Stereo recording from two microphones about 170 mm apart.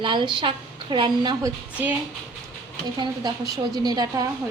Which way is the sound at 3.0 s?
25° right (ahead or behind).